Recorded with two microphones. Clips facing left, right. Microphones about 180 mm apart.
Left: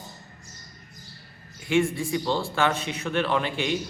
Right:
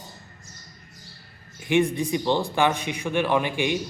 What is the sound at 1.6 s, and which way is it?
A man's voice, 20° right (ahead or behind).